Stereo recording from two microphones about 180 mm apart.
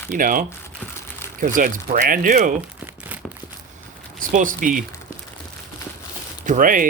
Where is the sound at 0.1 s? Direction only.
50° right (ahead or behind).